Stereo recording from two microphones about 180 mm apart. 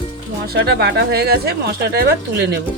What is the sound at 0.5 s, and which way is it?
Speech, 65° right (ahead or behind).